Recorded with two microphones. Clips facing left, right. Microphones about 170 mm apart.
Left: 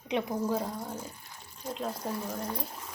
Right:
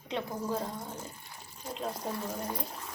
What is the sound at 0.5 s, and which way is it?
Speech, 5° left (ahead or behind).